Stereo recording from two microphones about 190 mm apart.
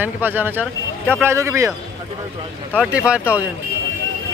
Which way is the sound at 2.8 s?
5° right (ahead or behind).